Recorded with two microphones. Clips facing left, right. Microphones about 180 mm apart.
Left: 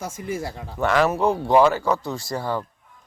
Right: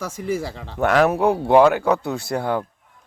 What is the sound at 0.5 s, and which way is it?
A man's voice, 90° right.